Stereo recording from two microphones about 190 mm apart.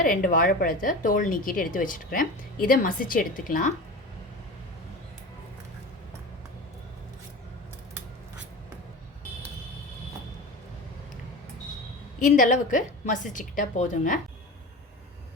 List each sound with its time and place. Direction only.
0.0 s a woman's voice: 45° left (ahead or behind)
12.2 s a woman's voice: 40° left (ahead or behind)